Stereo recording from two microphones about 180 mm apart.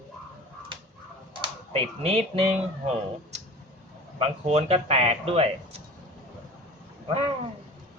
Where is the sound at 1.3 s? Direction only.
30° right (ahead or behind).